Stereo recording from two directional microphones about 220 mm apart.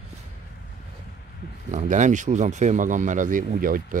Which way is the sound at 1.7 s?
30° right (ahead or behind).